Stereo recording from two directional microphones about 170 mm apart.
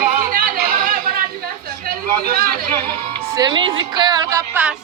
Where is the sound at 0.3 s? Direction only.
55° right (ahead or behind).